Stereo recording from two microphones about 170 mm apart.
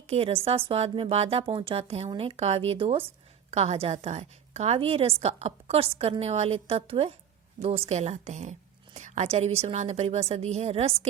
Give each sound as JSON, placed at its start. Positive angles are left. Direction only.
{"t": 0.1, "sound": "a woman's voice", "side_deg": -35}